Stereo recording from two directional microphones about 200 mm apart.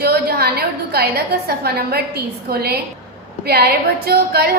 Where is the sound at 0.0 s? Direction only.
50° right (ahead or behind).